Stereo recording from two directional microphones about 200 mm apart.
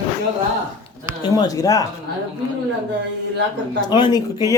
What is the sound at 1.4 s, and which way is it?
Speech, 15° left (ahead or behind).